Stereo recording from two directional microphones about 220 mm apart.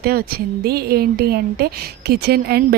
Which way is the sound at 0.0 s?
45° right (ahead or behind).